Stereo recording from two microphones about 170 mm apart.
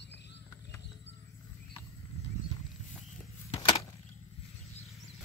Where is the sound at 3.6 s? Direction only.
30° left (ahead or behind).